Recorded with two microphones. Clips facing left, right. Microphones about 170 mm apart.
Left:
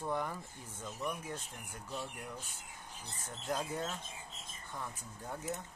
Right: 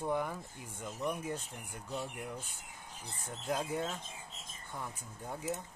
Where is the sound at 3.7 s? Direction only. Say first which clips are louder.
Right 3 dB; 10° right (ahead or behind).